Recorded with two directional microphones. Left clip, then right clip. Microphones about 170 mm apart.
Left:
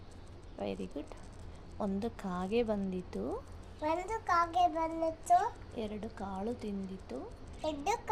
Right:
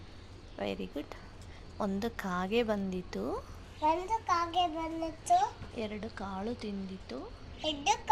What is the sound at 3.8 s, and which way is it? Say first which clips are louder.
A child's voice: right 4 dB; 15° left (ahead or behind).